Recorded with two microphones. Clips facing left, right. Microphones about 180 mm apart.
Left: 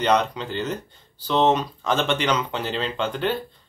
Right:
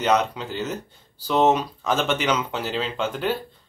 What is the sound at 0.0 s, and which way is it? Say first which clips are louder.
Speech: even; 5° right (ahead or behind).